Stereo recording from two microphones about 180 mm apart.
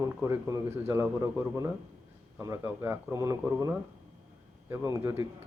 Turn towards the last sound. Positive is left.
turn(degrees=-15)  # may be behind; listen again after turning